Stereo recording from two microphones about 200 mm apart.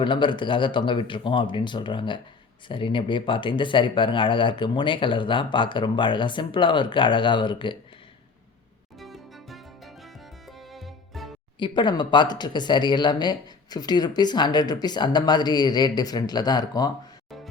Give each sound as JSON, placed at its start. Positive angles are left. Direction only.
{"t": 0.0, "sound": "speech", "side_deg": 25}
{"t": 9.0, "sound": "music", "side_deg": 0}
{"t": 11.6, "sound": "speech", "side_deg": 25}